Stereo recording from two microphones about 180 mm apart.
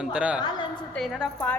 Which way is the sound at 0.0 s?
5° right (ahead or behind).